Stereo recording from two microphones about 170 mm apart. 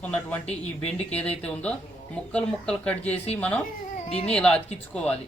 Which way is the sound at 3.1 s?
35° left (ahead or behind).